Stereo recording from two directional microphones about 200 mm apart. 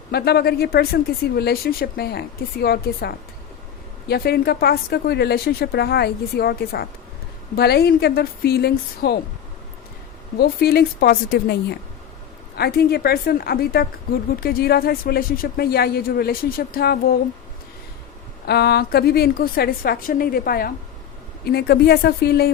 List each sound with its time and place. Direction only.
0.1 s a woman's voice: 50° left (ahead or behind)
10.3 s a woman's voice: 50° left (ahead or behind)
18.4 s a woman's voice: 55° left (ahead or behind)